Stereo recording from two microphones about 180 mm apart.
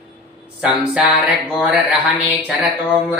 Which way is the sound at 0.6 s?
5° right (ahead or behind).